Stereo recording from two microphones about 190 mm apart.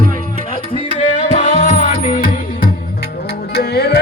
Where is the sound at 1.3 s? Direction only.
40° left (ahead or behind).